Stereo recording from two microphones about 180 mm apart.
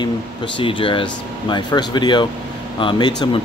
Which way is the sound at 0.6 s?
30° left (ahead or behind).